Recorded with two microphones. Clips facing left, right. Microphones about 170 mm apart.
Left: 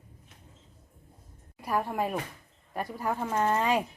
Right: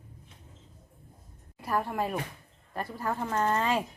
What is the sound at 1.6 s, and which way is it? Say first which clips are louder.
Speech: left 1 dB; 10° left (ahead or behind).